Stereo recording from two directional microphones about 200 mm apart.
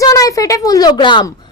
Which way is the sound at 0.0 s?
15° left (ahead or behind).